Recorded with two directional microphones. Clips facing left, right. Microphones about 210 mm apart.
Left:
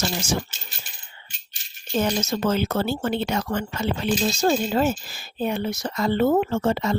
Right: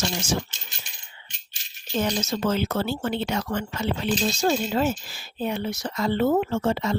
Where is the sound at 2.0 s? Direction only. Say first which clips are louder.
Left 2 dB; 45° left (ahead or behind).